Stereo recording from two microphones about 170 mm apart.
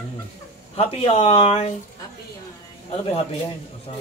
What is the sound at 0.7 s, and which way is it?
Speech, 35° left (ahead or behind).